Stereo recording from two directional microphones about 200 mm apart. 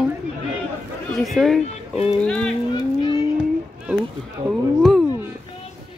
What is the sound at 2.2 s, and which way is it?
Speech, 5° left (ahead or behind).